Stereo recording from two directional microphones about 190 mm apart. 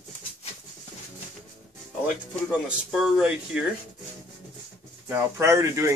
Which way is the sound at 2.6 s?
5° right (ahead or behind).